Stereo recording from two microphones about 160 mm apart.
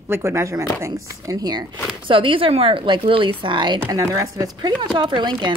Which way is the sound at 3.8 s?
20° right (ahead or behind).